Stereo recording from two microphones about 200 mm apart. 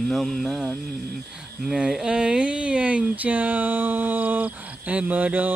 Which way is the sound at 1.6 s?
5° right (ahead or behind).